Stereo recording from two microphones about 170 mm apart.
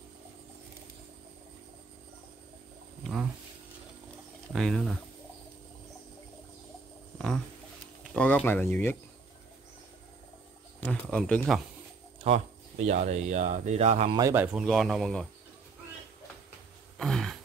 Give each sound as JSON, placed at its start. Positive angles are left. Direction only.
{"t": 3.0, "sound": "a sound", "side_deg": 0}
{"t": 4.5, "sound": "speech", "side_deg": 0}
{"t": 7.2, "sound": "a sound", "side_deg": 5}
{"t": 8.1, "sound": "speech", "side_deg": 5}
{"t": 10.8, "sound": "speech", "side_deg": 5}
{"t": 12.2, "sound": "speech", "side_deg": -40}
{"t": 14.3, "sound": "speech", "side_deg": -10}
{"t": 17.0, "sound": "throat clearing", "side_deg": 0}